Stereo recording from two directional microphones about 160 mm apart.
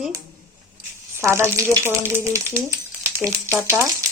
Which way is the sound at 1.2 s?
15° right (ahead or behind).